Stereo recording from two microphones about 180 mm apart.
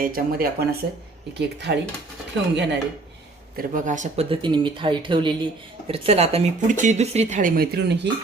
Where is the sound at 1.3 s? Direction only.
70° right (ahead or behind).